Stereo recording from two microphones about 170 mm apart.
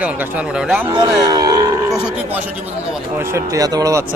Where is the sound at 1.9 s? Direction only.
5° right (ahead or behind).